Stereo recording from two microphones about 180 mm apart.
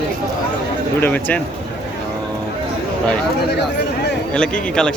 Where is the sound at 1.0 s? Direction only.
10° left (ahead or behind).